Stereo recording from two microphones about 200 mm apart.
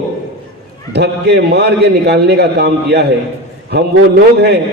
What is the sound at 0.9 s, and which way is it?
A man's voice, 55° right (ahead or behind).